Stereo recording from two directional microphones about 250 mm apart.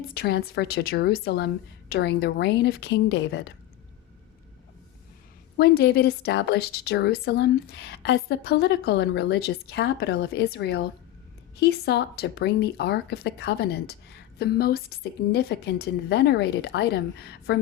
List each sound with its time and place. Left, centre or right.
0.1 s speech: left
5.5 s speech: left